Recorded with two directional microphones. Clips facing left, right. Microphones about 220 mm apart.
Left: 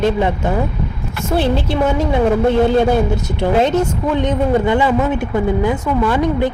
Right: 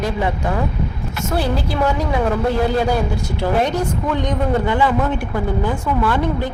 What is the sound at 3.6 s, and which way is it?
A woman's voice, 20° left (ahead or behind).